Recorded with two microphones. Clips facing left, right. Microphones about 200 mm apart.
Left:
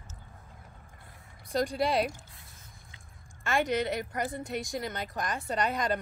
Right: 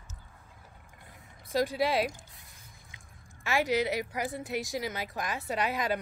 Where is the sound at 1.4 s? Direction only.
5° right (ahead or behind).